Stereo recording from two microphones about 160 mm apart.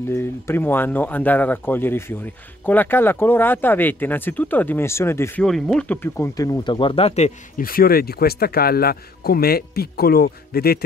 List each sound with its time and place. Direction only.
0.1 s speech: 15° left (ahead or behind)
5.4 s speech: 5° left (ahead or behind)
6.0 s speech: 15° left (ahead or behind); by 7.6 s 45° left (ahead or behind)
7.6 s speech: 65° left (ahead or behind)